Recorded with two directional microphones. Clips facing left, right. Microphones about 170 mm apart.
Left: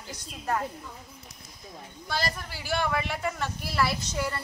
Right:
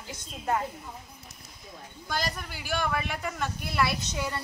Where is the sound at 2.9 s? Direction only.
Centre (ahead or behind).